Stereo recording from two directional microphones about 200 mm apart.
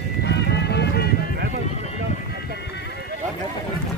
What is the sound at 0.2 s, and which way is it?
Music, 55° left (ahead or behind).